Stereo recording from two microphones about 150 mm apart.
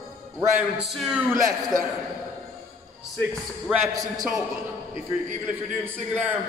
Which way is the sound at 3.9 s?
25° right (ahead or behind).